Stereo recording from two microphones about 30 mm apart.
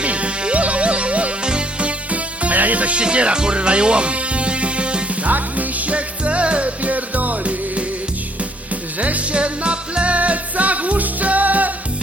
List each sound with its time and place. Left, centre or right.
0.0 s music: right
2.0 s music: right
3.0 s speech: right
5.3 s music: right
9.0 s music: right
9.4 s music: right